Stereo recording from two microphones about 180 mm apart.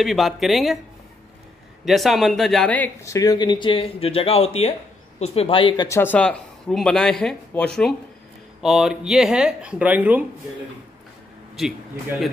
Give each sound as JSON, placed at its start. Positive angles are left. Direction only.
{"t": 0.0, "sound": "speech", "side_deg": 0}
{"t": 1.9, "sound": "speech", "side_deg": 0}
{"t": 5.9, "sound": "speech", "side_deg": 10}